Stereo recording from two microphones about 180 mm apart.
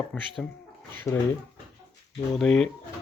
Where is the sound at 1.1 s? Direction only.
15° left (ahead or behind).